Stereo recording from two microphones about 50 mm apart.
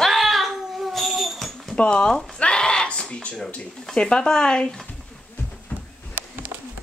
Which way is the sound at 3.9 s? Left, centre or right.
Centre.